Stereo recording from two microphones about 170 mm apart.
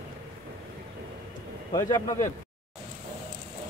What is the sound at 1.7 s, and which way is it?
Speech, 20° left (ahead or behind).